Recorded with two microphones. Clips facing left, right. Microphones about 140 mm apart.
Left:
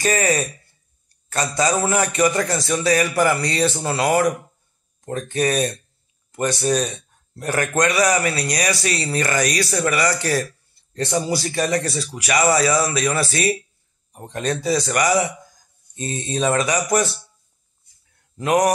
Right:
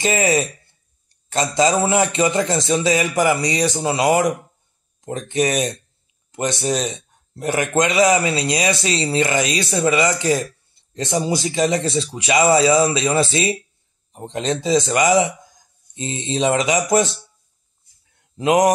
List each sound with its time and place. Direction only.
0.0 s a man's voice: 20° right (ahead or behind)
1.0 s a sound: 20° right (ahead or behind)
1.9 s a man's voice: 20° right (ahead or behind)
18.4 s a man's voice: 20° right (ahead or behind)